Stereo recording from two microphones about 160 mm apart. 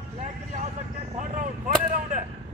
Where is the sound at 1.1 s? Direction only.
55° right (ahead or behind).